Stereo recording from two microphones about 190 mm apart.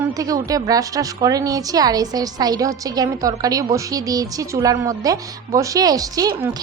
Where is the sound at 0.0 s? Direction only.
20° right (ahead or behind).